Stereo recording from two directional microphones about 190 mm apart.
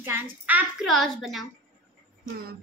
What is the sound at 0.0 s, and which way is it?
A woman's voice, 10° right (ahead or behind).